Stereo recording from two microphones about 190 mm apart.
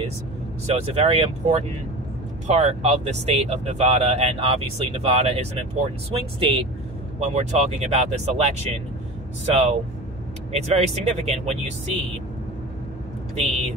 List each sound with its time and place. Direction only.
0.7 s speech: 30° right (ahead or behind)